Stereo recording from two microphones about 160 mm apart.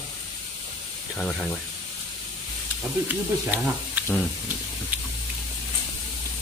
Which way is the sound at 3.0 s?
10° right (ahead or behind).